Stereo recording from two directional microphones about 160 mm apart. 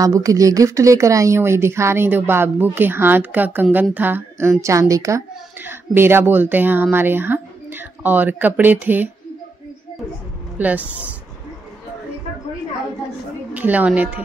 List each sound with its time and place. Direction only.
0.0 s a woman's voice: 20° right (ahead or behind)
10.6 s a woman's voice: 10° right (ahead or behind)
13.5 s a woman's voice: 10° right (ahead or behind)